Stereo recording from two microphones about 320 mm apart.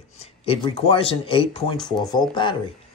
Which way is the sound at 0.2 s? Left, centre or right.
Centre.